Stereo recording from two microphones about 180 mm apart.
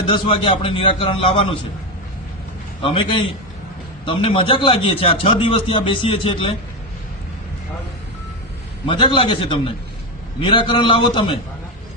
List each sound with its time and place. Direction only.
0.1 s a man's voice: 30° left (ahead or behind)
2.8 s a man's voice: 30° left (ahead or behind)
8.9 s a man's voice: 25° left (ahead or behind)